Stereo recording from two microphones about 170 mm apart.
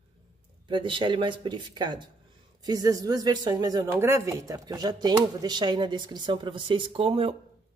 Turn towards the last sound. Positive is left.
turn(degrees=-35)  # may be behind; listen again after turning